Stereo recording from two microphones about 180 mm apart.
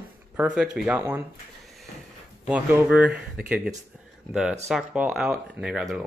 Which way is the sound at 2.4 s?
5° right (ahead or behind).